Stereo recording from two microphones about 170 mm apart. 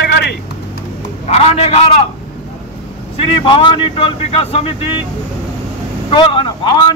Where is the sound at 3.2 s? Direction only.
30° left (ahead or behind).